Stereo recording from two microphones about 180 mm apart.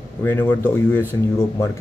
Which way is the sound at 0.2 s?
15° left (ahead or behind).